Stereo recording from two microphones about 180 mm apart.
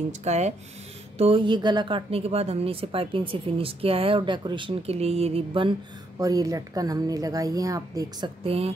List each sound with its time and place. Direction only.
0.2 s a woman's voice: 40° right (ahead or behind); by 8.3 s 20° right (ahead or behind)
8.5 s speech: 35° right (ahead or behind)